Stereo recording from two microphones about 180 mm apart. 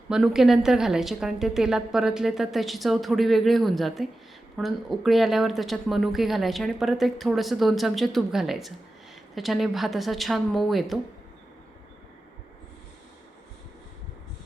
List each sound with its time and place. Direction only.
0.1 s speech: centre (ahead or behind)